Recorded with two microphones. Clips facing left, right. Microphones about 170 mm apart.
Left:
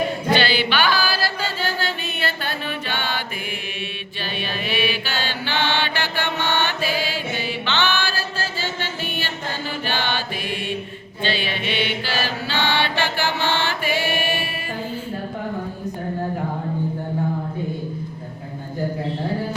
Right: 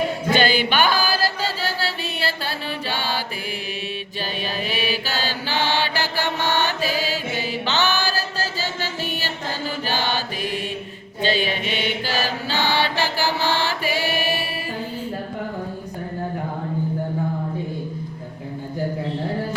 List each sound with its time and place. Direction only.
0.3 s chant: 45° right (ahead or behind)
4.4 s mantra: 40° right (ahead or behind)